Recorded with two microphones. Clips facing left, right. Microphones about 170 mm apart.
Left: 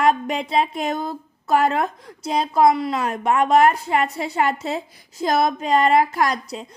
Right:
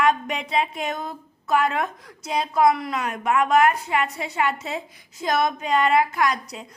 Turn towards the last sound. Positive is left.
turn(degrees=30)  # may be behind; listen again after turning